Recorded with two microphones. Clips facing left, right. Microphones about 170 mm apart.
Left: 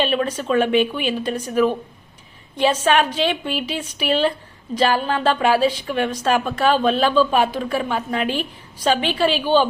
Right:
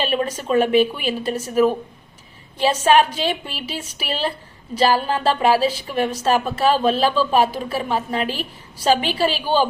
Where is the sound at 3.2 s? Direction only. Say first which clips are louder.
Left 3 dB; 40° right (ahead or behind).